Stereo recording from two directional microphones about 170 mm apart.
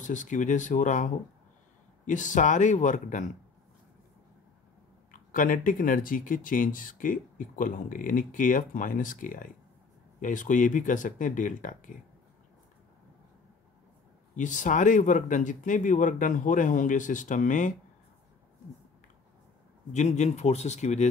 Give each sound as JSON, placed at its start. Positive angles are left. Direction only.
{"t": 0.0, "sound": "speech", "side_deg": 45}
{"t": 5.1, "sound": "speech", "side_deg": 50}
{"t": 14.3, "sound": "speech", "side_deg": 50}
{"t": 19.9, "sound": "speech", "side_deg": 45}